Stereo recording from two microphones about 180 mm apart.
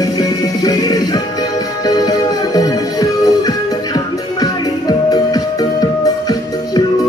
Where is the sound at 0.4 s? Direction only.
20° left (ahead or behind).